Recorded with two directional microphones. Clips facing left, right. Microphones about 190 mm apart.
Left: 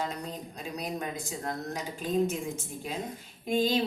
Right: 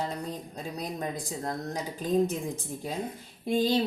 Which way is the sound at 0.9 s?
35° right (ahead or behind).